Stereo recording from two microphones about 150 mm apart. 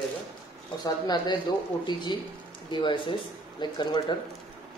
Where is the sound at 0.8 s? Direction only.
30° left (ahead or behind).